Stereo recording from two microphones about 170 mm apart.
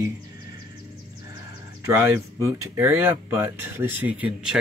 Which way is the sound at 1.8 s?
15° right (ahead or behind).